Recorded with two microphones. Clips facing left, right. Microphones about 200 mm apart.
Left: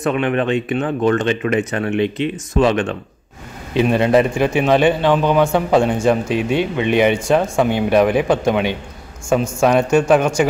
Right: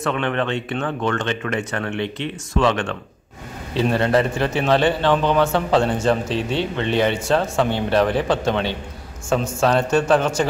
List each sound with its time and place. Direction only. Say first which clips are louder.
0.0 s a man's voice: left 4 dB; 15° left (ahead or behind)